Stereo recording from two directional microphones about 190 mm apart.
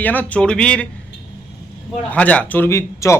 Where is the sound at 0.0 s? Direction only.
10° left (ahead or behind).